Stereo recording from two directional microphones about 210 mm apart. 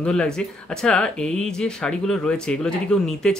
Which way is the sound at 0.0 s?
5° left (ahead or behind).